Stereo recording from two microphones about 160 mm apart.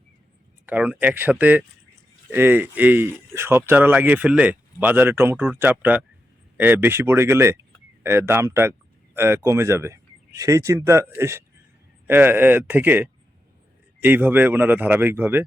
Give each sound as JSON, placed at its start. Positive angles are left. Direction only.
{"t": 0.6, "sound": "speech", "side_deg": -10}